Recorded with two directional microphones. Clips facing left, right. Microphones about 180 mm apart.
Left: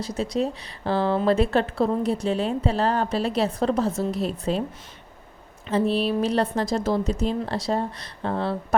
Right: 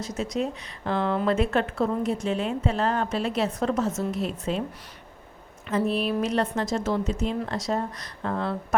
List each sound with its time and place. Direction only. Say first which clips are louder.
0.0 s speech: left 3 dB; 30° left (ahead or behind)
5.6 s speech: left 3 dB; 30° left (ahead or behind)